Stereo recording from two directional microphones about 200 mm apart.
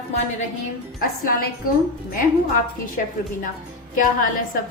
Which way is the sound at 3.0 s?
45° left (ahead or behind).